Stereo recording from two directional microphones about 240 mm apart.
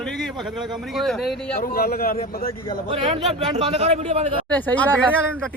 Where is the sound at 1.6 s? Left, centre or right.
Left.